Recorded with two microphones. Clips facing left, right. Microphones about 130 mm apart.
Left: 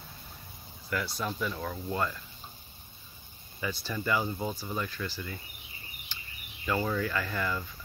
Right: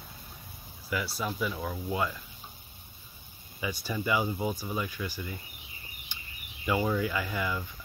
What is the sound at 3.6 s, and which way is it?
Speech, 10° right (ahead or behind).